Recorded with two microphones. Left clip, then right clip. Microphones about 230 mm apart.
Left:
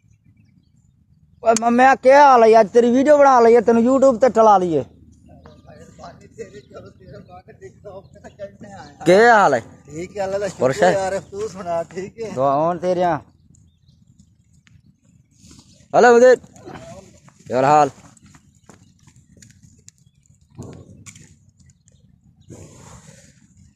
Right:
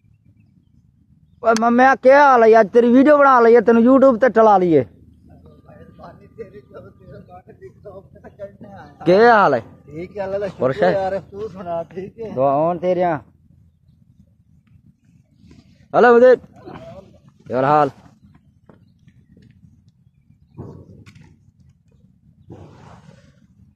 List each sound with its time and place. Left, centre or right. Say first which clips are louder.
1.4 s speech: even; centre; by 4.8 s right
5.7 s a sound: left 1 dB; centre
9.0 s speech: even; centre
12.4 s speech: right 1 dB; centre
15.4 s a sound: left 3 dB; centre
17.5 s speech: left 1 dB; centre